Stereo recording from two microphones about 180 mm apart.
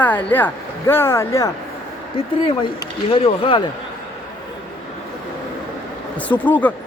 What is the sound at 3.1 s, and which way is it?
Speech, 30° left (ahead or behind).